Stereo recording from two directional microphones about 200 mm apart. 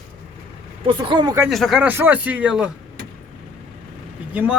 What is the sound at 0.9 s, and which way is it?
Speech, 25° right (ahead or behind).